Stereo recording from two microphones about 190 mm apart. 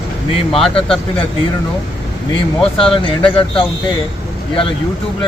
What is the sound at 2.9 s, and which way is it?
Speech, 25° left (ahead or behind).